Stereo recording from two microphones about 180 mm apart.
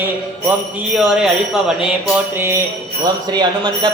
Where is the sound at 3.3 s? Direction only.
25° right (ahead or behind).